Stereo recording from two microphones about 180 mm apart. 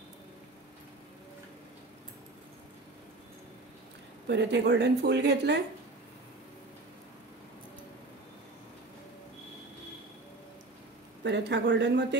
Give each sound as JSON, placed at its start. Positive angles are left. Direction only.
{"t": 4.3, "sound": "speech", "side_deg": -70}
{"t": 11.2, "sound": "speech", "side_deg": -70}